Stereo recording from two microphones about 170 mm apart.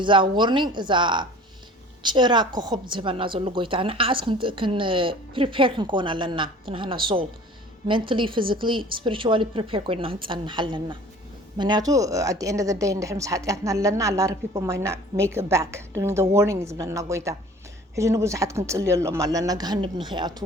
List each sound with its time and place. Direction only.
0.0 s a woman's voice: 30° right (ahead or behind)